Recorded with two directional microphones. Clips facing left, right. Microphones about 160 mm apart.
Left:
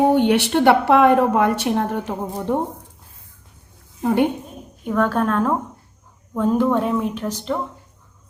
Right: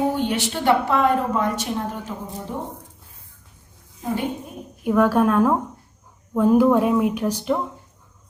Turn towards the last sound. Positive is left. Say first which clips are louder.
# right 2 dB
turn(degrees=-10)  # may be behind; listen again after turning